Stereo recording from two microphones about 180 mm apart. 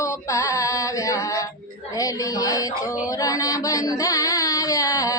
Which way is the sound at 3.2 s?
20° left (ahead or behind).